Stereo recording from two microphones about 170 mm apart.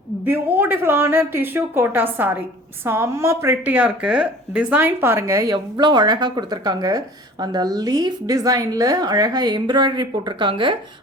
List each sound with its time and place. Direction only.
0.3 s a woman's voice: 10° right (ahead or behind); by 10.8 s 30° right (ahead or behind)